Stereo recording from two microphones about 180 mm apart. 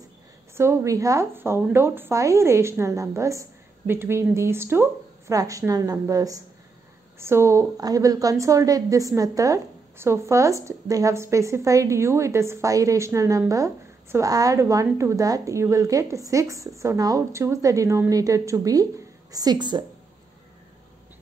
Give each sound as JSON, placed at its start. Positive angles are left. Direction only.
{"t": 0.6, "sound": "a woman's voice", "side_deg": -15}